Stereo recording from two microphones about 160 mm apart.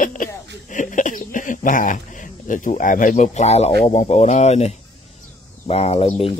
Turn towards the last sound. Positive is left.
turn(degrees=40)  # may be behind; listen again after turning